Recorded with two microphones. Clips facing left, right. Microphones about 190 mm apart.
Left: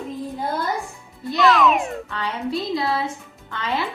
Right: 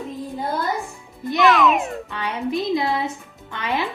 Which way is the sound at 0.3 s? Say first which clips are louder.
Right 1 dB; centre (ahead or behind).